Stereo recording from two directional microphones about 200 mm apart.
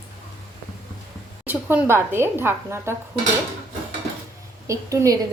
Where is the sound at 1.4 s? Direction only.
10° right (ahead or behind).